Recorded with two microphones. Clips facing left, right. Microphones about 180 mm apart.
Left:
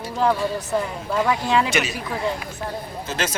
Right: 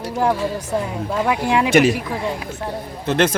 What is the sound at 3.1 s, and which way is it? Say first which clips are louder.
Speech: right 10 dB; 60° right (ahead or behind).